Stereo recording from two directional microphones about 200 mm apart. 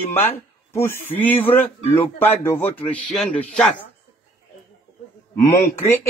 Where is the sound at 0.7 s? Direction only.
10° left (ahead or behind).